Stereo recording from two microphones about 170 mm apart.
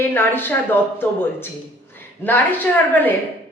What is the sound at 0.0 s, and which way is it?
Speech, 10° left (ahead or behind).